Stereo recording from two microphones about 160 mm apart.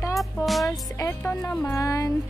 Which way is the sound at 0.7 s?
20° left (ahead or behind).